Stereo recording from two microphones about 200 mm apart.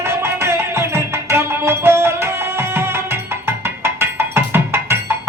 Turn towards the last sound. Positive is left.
turn(degrees=-10)  # may be behind; listen again after turning